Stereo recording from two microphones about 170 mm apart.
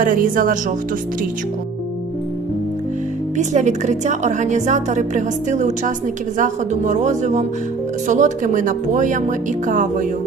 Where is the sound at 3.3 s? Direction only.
45° right (ahead or behind).